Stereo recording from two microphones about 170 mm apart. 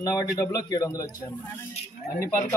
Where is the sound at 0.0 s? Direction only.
20° left (ahead or behind).